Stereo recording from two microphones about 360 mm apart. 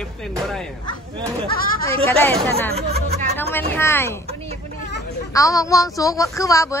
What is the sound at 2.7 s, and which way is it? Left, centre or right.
Speech, centre.